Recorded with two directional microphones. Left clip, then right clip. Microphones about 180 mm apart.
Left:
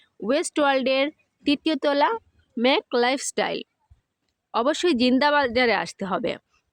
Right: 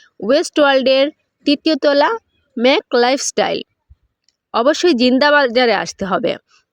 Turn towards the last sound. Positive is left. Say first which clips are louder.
# right 9 dB
turn(degrees=-35)  # may be behind; listen again after turning